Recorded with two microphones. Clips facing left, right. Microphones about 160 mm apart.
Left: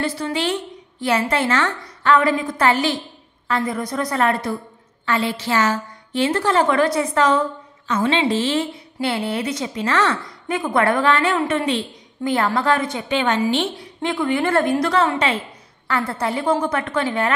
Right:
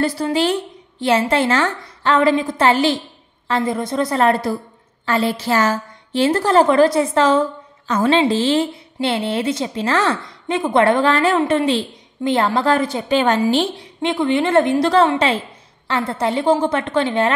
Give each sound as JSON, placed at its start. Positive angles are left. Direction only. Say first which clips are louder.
{"t": 0.0, "sound": "a woman's voice", "louder": "right 5 dB", "side_deg": -35}
{"t": 7.9, "sound": "a woman's voice", "louder": "right 3 dB", "side_deg": -40}
{"t": 14.0, "sound": "a woman's voice", "louder": "right 3 dB", "side_deg": -25}
{"t": 15.9, "sound": "a woman's voice", "louder": "right 3 dB", "side_deg": -20}